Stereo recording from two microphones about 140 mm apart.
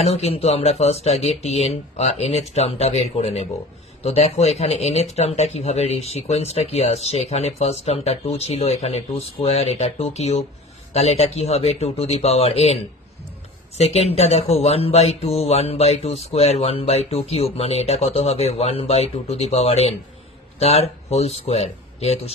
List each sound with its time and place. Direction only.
0.0 s speech: 45° left (ahead or behind)
13.7 s speech: 50° left (ahead or behind)